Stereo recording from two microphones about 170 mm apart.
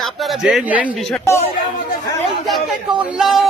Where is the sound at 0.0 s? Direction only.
Centre (ahead or behind).